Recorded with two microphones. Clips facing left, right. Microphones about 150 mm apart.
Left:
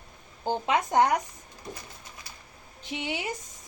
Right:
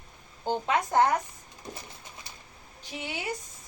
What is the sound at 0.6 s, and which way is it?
Speech, 20° left (ahead or behind).